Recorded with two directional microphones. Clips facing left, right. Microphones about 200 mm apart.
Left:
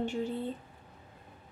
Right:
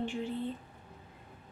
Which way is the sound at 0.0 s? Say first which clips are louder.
Left 3 dB; 40° left (ahead or behind).